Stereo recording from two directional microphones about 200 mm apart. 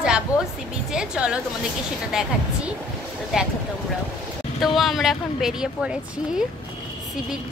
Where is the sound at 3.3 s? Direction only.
Centre (ahead or behind).